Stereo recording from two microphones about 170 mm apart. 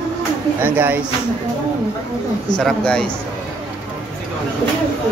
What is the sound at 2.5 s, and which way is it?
Speech, 5° left (ahead or behind).